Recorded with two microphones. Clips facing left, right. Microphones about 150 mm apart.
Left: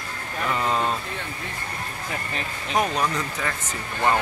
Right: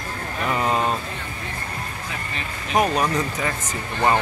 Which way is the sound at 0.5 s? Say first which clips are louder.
Right 2 dB; 15° right (ahead or behind).